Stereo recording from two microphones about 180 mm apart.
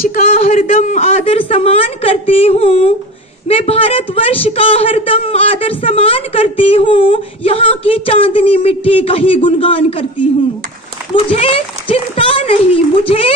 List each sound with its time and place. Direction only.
0.5 s a woman's voice: 35° left (ahead or behind)
11.2 s a woman's voice: 30° left (ahead or behind)